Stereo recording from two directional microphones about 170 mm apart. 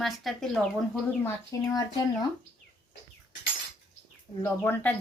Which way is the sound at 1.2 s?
20° left (ahead or behind).